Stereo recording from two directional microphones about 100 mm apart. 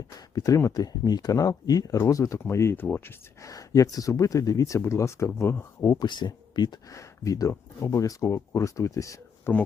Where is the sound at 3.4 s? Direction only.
35° left (ahead or behind).